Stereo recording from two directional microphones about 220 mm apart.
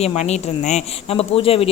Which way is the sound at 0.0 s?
30° left (ahead or behind).